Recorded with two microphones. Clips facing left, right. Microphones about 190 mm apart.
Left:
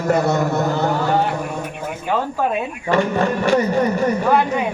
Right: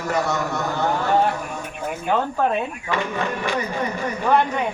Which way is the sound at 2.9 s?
45° left (ahead or behind).